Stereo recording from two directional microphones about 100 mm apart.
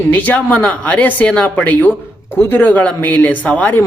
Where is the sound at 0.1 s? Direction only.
15° left (ahead or behind).